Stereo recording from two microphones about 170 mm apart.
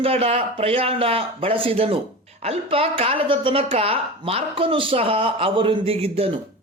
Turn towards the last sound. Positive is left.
turn(degrees=-35)  # may be behind; listen again after turning